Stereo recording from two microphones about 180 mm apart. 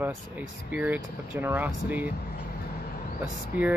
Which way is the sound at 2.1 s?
60° left (ahead or behind).